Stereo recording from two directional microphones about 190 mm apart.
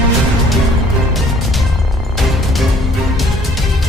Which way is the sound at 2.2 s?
Centre (ahead or behind).